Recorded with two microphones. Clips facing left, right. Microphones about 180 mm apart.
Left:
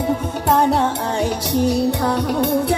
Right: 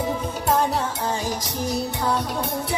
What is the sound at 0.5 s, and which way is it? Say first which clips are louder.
Music: left 6 dB; 65° left (ahead or behind).